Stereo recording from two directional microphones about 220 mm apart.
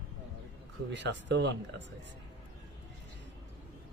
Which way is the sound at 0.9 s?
55° right (ahead or behind).